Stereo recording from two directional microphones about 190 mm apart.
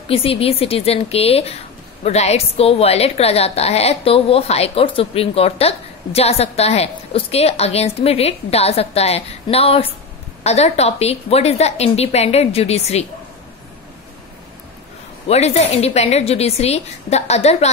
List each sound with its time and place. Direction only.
0.1 s a woman's voice: 30° left (ahead or behind)
15.2 s a woman's voice: 35° left (ahead or behind)